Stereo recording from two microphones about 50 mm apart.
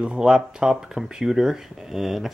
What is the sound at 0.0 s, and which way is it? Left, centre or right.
Speech, right.